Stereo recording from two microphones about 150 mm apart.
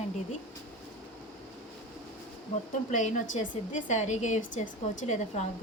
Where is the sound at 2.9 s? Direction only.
55° left (ahead or behind).